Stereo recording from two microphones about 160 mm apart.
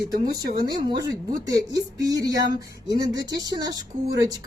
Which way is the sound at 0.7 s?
25° right (ahead or behind).